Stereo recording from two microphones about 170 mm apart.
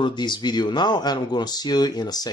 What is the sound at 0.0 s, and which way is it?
Speech, 25° left (ahead or behind).